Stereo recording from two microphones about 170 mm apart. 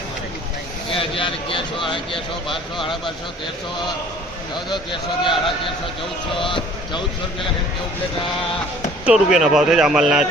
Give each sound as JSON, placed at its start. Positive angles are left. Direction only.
{"t": 0.9, "sound": "speech", "side_deg": 30}
{"t": 4.5, "sound": "speech", "side_deg": 25}
{"t": 6.4, "sound": "speech", "side_deg": 30}
{"t": 9.0, "sound": "speech", "side_deg": -5}